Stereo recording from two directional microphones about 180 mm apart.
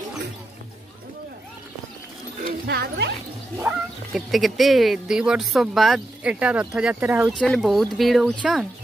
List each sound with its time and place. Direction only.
2.6 s speech: 65° right (ahead or behind)
3.6 s speech: centre (ahead or behind)
7.2 s speech: centre (ahead or behind)